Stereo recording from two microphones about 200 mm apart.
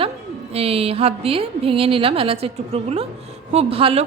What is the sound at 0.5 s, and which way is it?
Speech, 30° right (ahead or behind).